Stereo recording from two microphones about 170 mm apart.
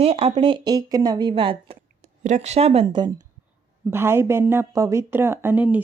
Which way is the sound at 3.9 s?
15° right (ahead or behind).